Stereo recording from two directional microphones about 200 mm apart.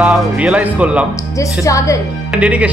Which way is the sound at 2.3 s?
5° right (ahead or behind).